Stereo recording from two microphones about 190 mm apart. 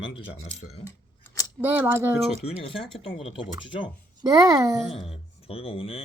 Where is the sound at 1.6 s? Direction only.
10° right (ahead or behind).